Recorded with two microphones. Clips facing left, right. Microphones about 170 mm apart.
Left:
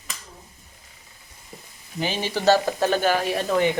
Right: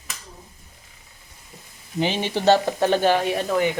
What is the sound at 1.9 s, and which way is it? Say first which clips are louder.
Speech: right 3 dB; 20° right (ahead or behind).